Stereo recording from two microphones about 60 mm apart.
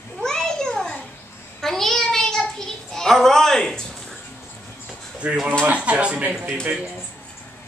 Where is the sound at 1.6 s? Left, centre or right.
Centre.